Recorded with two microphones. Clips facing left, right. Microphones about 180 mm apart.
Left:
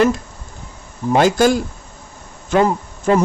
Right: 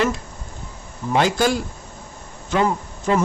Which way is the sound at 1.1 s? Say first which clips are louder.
Left 5 dB; 45° left (ahead or behind).